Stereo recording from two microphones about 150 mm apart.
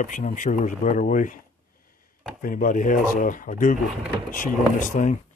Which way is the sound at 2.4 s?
65° left (ahead or behind).